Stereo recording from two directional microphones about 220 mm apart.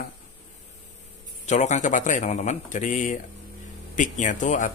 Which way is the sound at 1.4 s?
30° left (ahead or behind).